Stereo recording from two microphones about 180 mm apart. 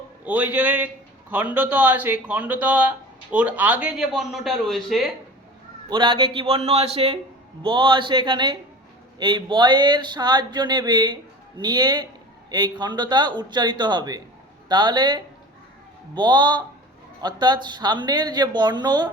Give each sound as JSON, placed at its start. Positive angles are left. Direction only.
{"t": 0.3, "sound": "speech", "side_deg": -10}
{"t": 5.9, "sound": "a man's voice", "side_deg": -30}